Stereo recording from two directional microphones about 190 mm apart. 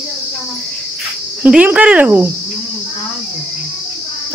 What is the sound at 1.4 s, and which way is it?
Speech, 5° right (ahead or behind).